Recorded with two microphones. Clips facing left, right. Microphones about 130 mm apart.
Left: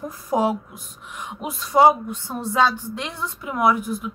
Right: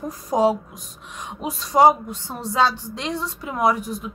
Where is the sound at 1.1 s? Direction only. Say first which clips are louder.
Right 1 dB; 35° right (ahead or behind).